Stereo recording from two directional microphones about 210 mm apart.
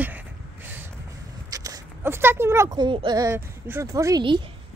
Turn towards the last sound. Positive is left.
turn(degrees=-25)  # may be behind; listen again after turning